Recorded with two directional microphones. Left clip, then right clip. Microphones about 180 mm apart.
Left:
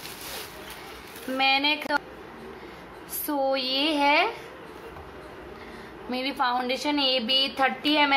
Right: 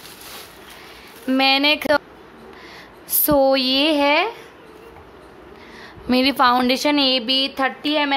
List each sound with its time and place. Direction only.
1.3 s speech: 60° right (ahead or behind)
3.3 s a woman's voice: 60° right (ahead or behind); by 4.3 s 45° right (ahead or behind)
6.0 s a woman's voice: 60° right (ahead or behind); by 8.1 s 35° right (ahead or behind)